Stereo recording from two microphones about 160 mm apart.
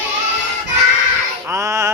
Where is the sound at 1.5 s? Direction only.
20° right (ahead or behind).